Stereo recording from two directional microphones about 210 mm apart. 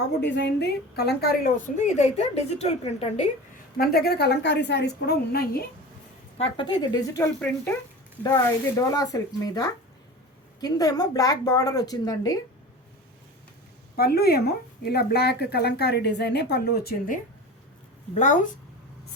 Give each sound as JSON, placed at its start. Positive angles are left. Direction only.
{"t": 0.2, "sound": "a woman's voice", "side_deg": 55}
{"t": 3.8, "sound": "speech", "side_deg": 50}
{"t": 6.3, "sound": "a woman's voice", "side_deg": 25}
{"t": 13.9, "sound": "speech", "side_deg": 50}
{"t": 18.1, "sound": "a woman's voice", "side_deg": 35}